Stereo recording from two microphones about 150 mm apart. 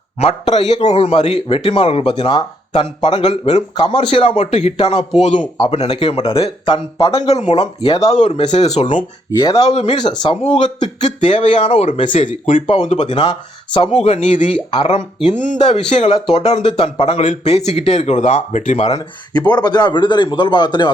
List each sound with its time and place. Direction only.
0.4 s speech: 30° left (ahead or behind)
3.2 s speech: 45° left (ahead or behind)
3.8 s speech: 35° left (ahead or behind)
7.3 s speech: 50° left (ahead or behind)
9.6 s speech: 45° left (ahead or behind)
9.9 s speech: 30° left (ahead or behind)
10.5 s speech: 50° left (ahead or behind)
11.2 s speech: 35° left (ahead or behind)
12.1 s speech: 55° left (ahead or behind)
14.5 s speech: 35° left (ahead or behind); by 18.9 s 50° left (ahead or behind)
18.9 s speech: 25° left (ahead or behind)